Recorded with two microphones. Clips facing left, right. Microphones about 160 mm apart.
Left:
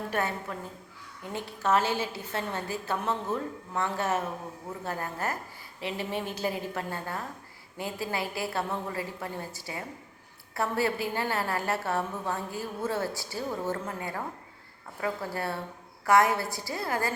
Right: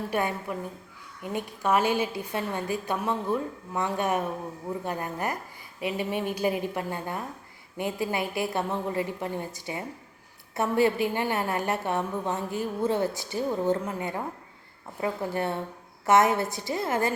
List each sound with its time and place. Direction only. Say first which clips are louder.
0.1 s a woman's voice: right 3 dB; 15° right (ahead or behind)